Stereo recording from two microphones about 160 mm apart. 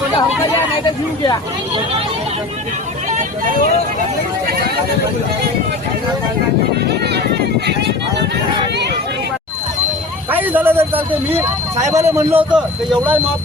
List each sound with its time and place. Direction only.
0.9 s speech: 30° left (ahead or behind)
6.8 s a sound: 90° right
10.3 s a man's voice: 10° right (ahead or behind)